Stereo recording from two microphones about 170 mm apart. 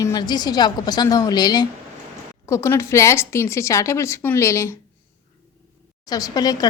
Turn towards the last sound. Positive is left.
turn(degrees=25)  # may be behind; listen again after turning